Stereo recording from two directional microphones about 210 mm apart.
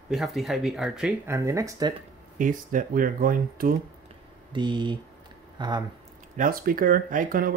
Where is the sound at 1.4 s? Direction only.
15° right (ahead or behind).